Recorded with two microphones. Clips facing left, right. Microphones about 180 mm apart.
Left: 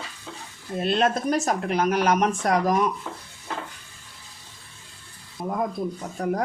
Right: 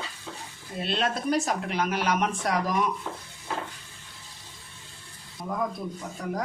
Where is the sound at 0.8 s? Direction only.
45° left (ahead or behind).